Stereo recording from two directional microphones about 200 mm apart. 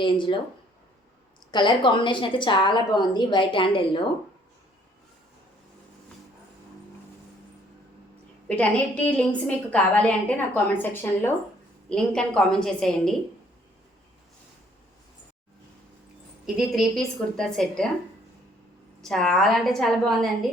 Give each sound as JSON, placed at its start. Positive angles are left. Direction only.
{"t": 0.0, "sound": "a woman's voice", "side_deg": 25}
{"t": 1.5, "sound": "a woman's voice", "side_deg": 20}
{"t": 8.4, "sound": "a woman's voice", "side_deg": 5}
{"t": 16.6, "sound": "a woman's voice", "side_deg": 0}
{"t": 19.0, "sound": "a woman's voice", "side_deg": 0}